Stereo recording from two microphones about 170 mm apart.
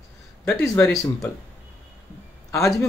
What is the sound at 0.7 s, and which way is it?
Speech, 20° left (ahead or behind).